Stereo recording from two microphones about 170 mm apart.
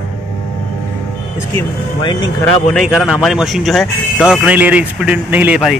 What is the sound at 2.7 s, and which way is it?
Speech, centre (ahead or behind).